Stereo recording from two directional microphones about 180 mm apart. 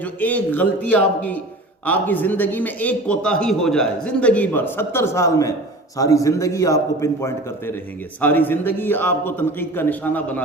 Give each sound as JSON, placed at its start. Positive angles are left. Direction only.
{"t": 0.0, "sound": "a man's voice", "side_deg": 10}